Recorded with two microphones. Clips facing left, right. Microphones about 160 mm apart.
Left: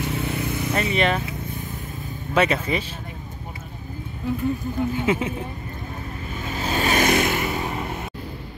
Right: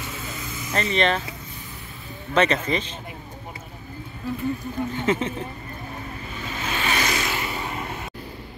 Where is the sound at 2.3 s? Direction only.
10° left (ahead or behind).